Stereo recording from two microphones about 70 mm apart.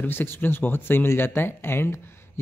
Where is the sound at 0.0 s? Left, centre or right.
Left.